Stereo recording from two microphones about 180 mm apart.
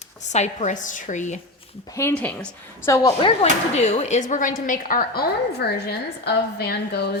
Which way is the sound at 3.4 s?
35° left (ahead or behind).